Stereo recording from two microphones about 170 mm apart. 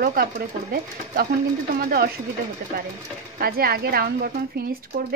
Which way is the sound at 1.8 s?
60° right (ahead or behind).